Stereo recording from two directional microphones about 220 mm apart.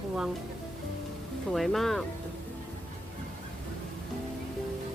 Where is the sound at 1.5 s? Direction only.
Centre (ahead or behind).